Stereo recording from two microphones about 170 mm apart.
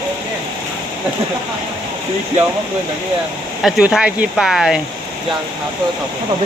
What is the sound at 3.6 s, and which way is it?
Speech, 5° right (ahead or behind).